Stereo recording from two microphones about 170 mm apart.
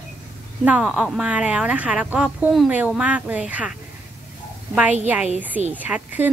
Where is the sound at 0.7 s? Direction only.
5° right (ahead or behind).